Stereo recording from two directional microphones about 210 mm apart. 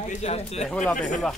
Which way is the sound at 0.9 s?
35° left (ahead or behind).